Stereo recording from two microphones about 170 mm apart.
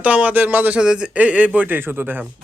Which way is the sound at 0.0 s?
10° right (ahead or behind).